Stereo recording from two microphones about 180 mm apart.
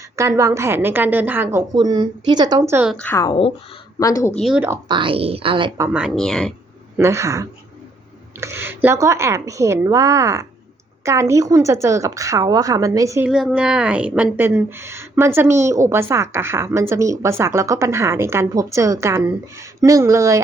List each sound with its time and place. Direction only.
0.2 s a woman's voice: 15° right (ahead or behind)
1.7 s speech: 25° right (ahead or behind)
2.9 s a woman's voice: 10° left (ahead or behind)
3.2 s speech: 30° left (ahead or behind)
4.4 s speech: 5° right (ahead or behind)
4.9 s speech: 30° right (ahead or behind)
6.0 s speech: centre (ahead or behind)
6.9 s a woman's voice: 15° right (ahead or behind)
13.2 s a woman's voice: 5° right (ahead or behind)